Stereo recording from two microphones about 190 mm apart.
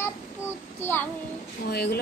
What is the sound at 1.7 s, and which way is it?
Speech, 60° left (ahead or behind).